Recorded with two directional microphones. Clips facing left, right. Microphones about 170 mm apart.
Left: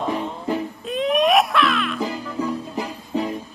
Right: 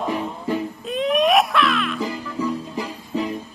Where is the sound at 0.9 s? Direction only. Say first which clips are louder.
Even; centre (ahead or behind).